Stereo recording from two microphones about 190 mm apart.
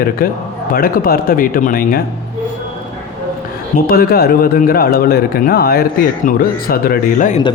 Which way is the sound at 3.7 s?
50° left (ahead or behind).